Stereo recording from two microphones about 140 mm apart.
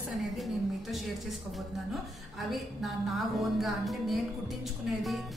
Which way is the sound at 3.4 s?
Centre (ahead or behind).